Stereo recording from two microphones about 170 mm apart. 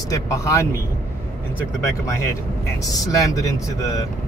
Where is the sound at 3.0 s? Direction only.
20° left (ahead or behind).